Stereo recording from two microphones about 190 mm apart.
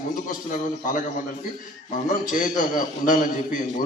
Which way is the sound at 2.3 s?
45° left (ahead or behind).